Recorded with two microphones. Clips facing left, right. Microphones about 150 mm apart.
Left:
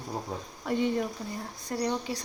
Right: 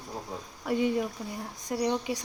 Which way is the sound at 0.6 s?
10° right (ahead or behind).